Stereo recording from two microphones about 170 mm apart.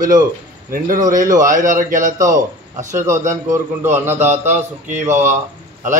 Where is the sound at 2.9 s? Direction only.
15° right (ahead or behind).